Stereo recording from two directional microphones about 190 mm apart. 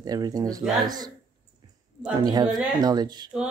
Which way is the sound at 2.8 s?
20° right (ahead or behind).